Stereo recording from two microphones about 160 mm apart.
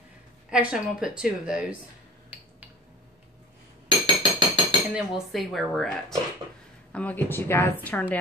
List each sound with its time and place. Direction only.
0.5 s speech: 5° right (ahead or behind)
4.0 s music: 25° right (ahead or behind)
4.9 s a woman's voice: centre (ahead or behind)